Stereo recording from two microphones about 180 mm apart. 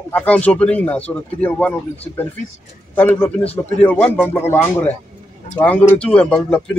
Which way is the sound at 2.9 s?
10° left (ahead or behind).